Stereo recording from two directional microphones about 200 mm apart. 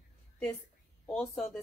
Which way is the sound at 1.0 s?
5° left (ahead or behind).